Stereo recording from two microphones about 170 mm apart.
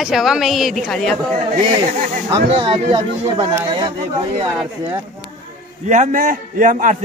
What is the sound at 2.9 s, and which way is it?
Speech, 30° right (ahead or behind).